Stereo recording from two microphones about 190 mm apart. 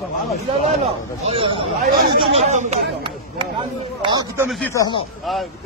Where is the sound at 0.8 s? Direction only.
30° right (ahead or behind).